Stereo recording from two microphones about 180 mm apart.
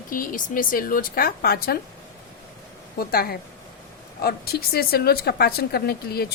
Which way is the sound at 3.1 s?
55° left (ahead or behind).